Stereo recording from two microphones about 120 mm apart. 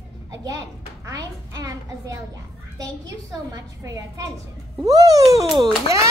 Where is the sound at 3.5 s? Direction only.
30° right (ahead or behind).